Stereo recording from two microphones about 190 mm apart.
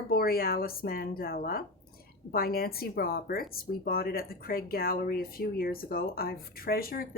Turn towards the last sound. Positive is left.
turn(degrees=50)  # may be behind; listen again after turning